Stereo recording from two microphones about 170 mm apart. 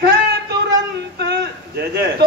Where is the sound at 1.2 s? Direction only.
70° right (ahead or behind).